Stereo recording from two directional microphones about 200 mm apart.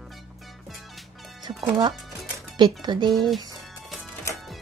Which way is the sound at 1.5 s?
25° right (ahead or behind).